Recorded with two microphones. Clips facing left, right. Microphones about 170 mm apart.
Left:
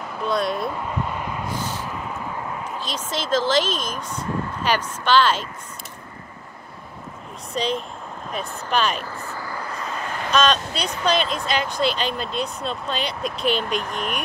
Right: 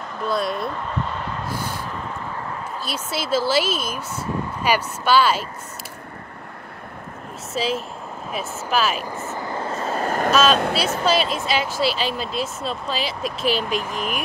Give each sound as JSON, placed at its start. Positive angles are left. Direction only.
{"t": 0.2, "sound": "speech", "side_deg": 0}
{"t": 1.5, "sound": "a sound", "side_deg": -10}
{"t": 2.8, "sound": "speech", "side_deg": -10}
{"t": 7.5, "sound": "speech", "side_deg": -5}
{"t": 9.0, "sound": "vehicle", "side_deg": -20}
{"t": 10.3, "sound": "speech", "side_deg": -5}